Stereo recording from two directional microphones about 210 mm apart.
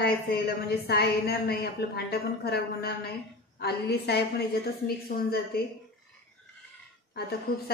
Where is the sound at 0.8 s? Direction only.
50° left (ahead or behind).